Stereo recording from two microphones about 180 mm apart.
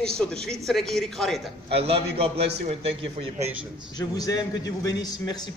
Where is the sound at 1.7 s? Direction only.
35° right (ahead or behind).